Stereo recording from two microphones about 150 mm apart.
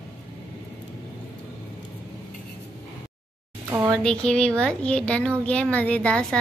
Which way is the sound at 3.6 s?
15° right (ahead or behind).